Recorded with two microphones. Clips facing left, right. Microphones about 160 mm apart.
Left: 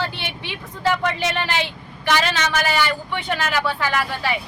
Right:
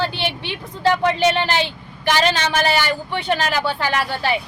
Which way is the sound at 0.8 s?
35° right (ahead or behind).